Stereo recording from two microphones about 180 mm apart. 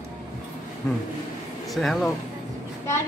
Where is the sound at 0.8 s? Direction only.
5° left (ahead or behind).